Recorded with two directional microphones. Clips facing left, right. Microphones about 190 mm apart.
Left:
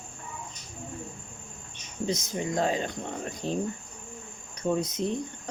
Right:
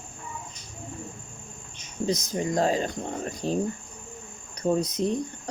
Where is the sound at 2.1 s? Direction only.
40° right (ahead or behind).